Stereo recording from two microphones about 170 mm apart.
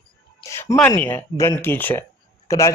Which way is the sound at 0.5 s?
15° left (ahead or behind).